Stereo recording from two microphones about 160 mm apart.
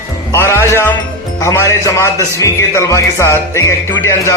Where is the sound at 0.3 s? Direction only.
15° left (ahead or behind).